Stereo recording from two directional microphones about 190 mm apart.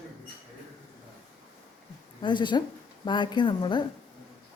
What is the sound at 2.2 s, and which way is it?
Speech, 25° left (ahead or behind).